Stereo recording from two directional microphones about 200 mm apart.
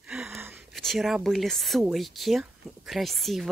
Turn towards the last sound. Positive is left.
turn(degrees=0)  # may be behind; listen again after turning